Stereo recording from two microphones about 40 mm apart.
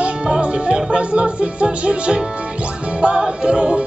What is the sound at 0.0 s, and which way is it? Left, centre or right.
Music, right.